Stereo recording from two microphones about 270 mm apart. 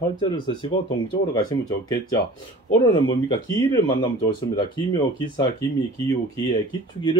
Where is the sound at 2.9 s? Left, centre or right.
Centre.